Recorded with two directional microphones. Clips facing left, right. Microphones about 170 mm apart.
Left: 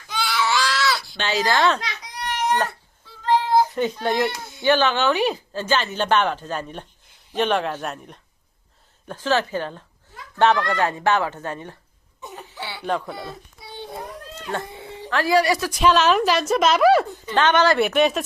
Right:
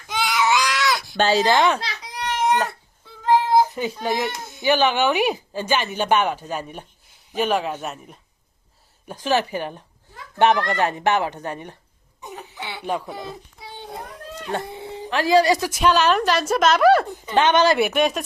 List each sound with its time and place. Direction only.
0.1 s baby cry: 20° right (ahead or behind)
1.1 s a child's voice: 40° right (ahead or behind)
1.4 s speech: 20° right (ahead or behind)
1.8 s baby cry: 25° right (ahead or behind)
3.5 s a child's voice: 10° right (ahead or behind)
9.0 s speech: 15° right (ahead or behind)
12.2 s a sound: 20° right (ahead or behind)
12.9 s speech: 15° right (ahead or behind)
14.3 s a child's voice: 20° right (ahead or behind)
15.8 s a woman's voice: centre (ahead or behind)
17.3 s speech: 15° right (ahead or behind)
17.8 s a woman's voice: centre (ahead or behind)